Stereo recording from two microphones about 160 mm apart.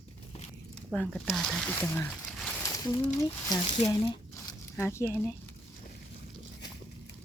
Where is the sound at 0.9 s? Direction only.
5° left (ahead or behind).